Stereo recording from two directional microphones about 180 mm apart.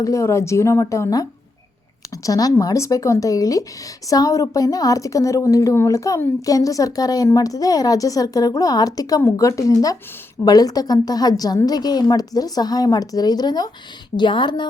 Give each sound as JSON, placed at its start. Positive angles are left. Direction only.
{"t": 0.0, "sound": "a woman's voice", "side_deg": 15}